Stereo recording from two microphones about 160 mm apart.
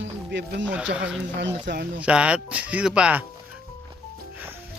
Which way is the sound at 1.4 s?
90° right.